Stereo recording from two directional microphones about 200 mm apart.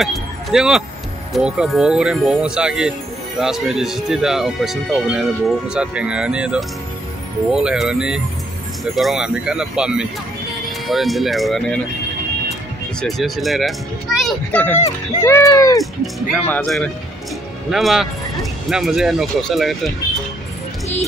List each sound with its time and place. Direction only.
0.0 s speech: centre (ahead or behind)
13.0 s speech: centre (ahead or behind); by 15.8 s 15° left (ahead or behind)
15.8 s speech: 5° left (ahead or behind)